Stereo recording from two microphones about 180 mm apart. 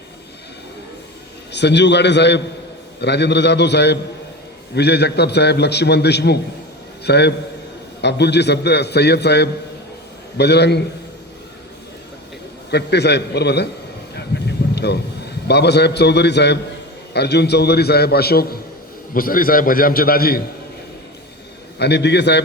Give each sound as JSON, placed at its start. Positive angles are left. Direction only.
{"t": 1.5, "sound": "a man's voice", "side_deg": 75}
{"t": 12.7, "sound": "a man's voice", "side_deg": 70}
{"t": 14.3, "sound": "a sound", "side_deg": 65}
{"t": 15.4, "sound": "a man's voice", "side_deg": 70}
{"t": 21.8, "sound": "a man's voice", "side_deg": 70}